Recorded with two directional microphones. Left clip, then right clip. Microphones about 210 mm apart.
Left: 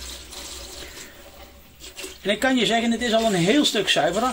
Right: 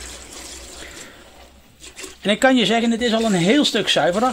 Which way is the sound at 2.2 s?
50° right (ahead or behind).